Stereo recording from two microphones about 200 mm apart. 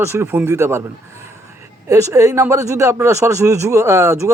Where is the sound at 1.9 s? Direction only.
15° right (ahead or behind).